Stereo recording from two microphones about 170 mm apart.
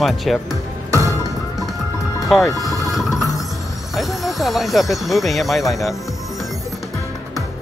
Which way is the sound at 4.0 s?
Centre (ahead or behind).